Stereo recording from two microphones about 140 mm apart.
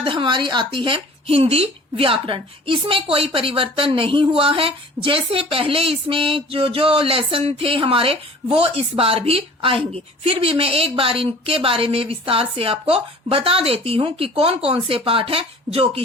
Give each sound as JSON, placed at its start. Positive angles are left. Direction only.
{"t": 0.0, "sound": "speech", "side_deg": -40}